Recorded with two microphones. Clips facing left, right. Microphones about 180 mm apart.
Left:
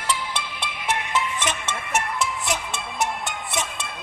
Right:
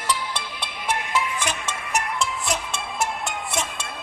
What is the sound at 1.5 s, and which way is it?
Music, centre (ahead or behind).